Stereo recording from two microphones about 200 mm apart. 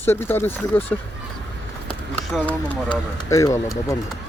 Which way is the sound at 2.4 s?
10° left (ahead or behind).